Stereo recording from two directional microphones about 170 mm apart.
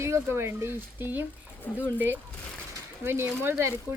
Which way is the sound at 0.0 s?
15° right (ahead or behind).